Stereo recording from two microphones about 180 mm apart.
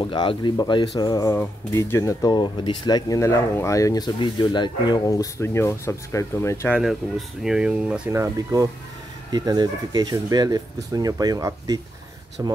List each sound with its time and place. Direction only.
0.0 s speech: 25° left (ahead or behind)
6.8 s speech: centre (ahead or behind)
8.2 s speech: 15° right (ahead or behind)